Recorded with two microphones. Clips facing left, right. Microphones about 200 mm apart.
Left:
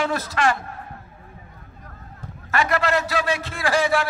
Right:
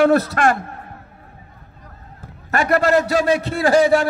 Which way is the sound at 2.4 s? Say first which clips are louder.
Right 5 dB; 45° right (ahead or behind).